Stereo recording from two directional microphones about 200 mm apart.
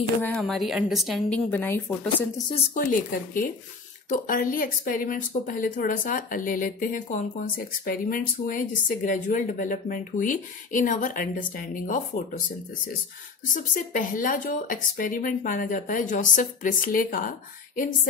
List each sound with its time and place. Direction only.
0.2 s a woman's voice: 5° left (ahead or behind)
2.5 s speech: 40° left (ahead or behind)
13.9 s a woman's voice: 40° left (ahead or behind)